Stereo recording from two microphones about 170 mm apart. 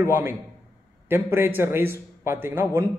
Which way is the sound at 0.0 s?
10° right (ahead or behind).